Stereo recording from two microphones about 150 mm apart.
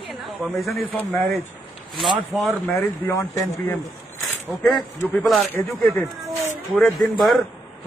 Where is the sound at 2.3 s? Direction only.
Centre (ahead or behind).